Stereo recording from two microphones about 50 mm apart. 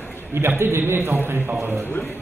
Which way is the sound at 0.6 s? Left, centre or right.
Right.